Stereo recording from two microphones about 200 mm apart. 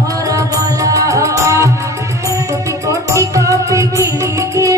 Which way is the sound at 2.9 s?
15° right (ahead or behind).